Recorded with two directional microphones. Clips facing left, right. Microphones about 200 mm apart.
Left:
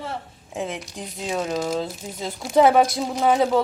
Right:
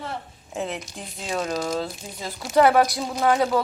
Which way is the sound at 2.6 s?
20° left (ahead or behind).